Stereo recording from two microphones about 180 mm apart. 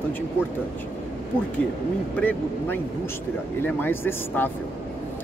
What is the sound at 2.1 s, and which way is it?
Speech, 10° left (ahead or behind).